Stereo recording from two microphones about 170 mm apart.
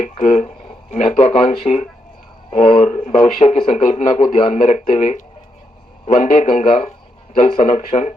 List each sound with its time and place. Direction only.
0.0 s speech: 45° left (ahead or behind)